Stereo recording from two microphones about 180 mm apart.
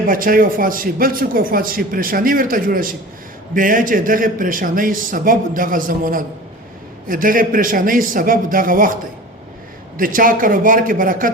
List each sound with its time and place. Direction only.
0.1 s a man's voice: 50° right (ahead or behind)
10.0 s a man's voice: 50° right (ahead or behind)